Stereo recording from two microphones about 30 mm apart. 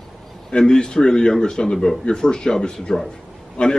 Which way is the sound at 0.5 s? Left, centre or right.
Left.